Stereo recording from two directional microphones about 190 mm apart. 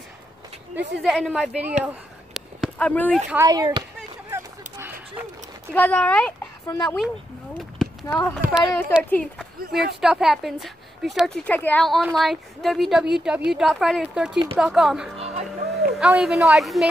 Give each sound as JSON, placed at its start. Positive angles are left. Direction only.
{"t": 0.7, "sound": "a woman's voice", "side_deg": 0}
{"t": 2.3, "sound": "a sound", "side_deg": 5}
{"t": 3.3, "sound": "speech", "side_deg": -15}
{"t": 4.3, "sound": "a sound", "side_deg": -10}
{"t": 5.7, "sound": "speech", "side_deg": 5}
{"t": 7.5, "sound": "a sound", "side_deg": 0}
{"t": 8.4, "sound": "a woman's voice", "side_deg": -5}
{"t": 15.1, "sound": "music", "side_deg": -35}
{"t": 15.7, "sound": "speech", "side_deg": 0}